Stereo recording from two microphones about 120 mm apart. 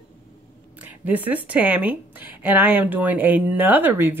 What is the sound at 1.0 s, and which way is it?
A woman's voice, 15° right (ahead or behind).